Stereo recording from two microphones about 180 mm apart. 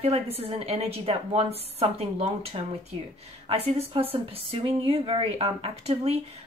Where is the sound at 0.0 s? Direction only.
35° right (ahead or behind).